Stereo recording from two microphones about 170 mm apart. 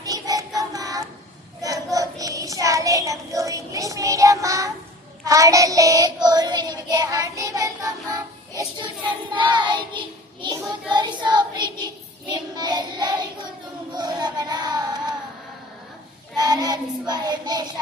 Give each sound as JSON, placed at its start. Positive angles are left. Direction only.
{"t": 0.0, "sound": "music", "side_deg": -20}
{"t": 0.7, "sound": "child singing", "side_deg": -20}
{"t": 13.9, "sound": "a sound", "side_deg": -25}
{"t": 16.4, "sound": "child singing", "side_deg": -25}